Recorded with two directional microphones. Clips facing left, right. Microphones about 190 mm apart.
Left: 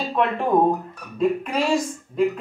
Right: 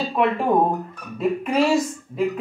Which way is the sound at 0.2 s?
5° right (ahead or behind).